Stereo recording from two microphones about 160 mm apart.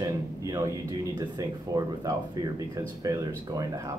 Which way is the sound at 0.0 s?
20° right (ahead or behind).